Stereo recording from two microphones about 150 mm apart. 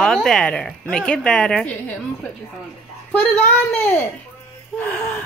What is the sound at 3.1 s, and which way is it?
Speech, 5° left (ahead or behind).